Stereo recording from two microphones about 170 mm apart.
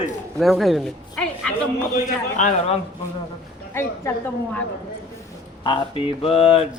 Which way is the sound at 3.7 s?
15° left (ahead or behind).